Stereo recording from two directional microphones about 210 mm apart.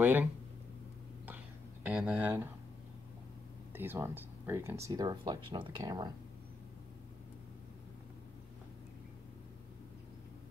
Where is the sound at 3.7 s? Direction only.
10° right (ahead or behind).